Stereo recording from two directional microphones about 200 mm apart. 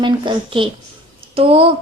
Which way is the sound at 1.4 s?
30° right (ahead or behind).